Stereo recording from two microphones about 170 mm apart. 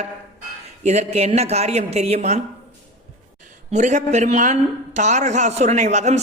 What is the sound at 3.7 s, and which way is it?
A man's voice, 45° right (ahead or behind).